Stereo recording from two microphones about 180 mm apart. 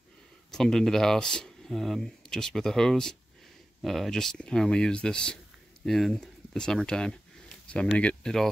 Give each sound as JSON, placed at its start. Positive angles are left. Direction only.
{"t": 0.5, "sound": "speech", "side_deg": 0}